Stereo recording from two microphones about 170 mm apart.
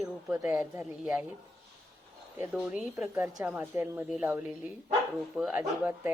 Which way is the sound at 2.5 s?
5° right (ahead or behind).